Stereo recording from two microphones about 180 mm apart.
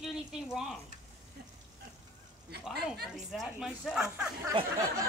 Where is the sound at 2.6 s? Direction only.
Centre (ahead or behind).